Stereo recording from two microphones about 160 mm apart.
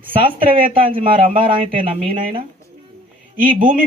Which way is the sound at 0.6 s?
60° right (ahead or behind).